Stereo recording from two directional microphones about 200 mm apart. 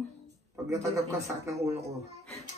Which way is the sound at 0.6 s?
15° right (ahead or behind).